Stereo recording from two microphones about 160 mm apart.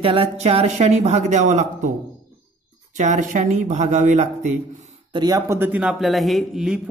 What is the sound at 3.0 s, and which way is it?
Speech, 50° right (ahead or behind).